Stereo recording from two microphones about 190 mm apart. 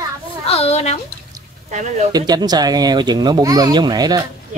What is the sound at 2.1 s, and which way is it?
Speech, 20° right (ahead or behind).